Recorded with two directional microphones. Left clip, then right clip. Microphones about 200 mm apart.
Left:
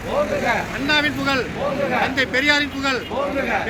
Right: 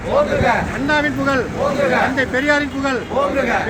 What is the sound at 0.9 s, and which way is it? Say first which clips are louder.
Speech: right 2 dB; 25° right (ahead or behind).